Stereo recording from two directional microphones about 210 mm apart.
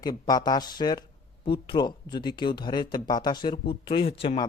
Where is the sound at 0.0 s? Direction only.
20° left (ahead or behind).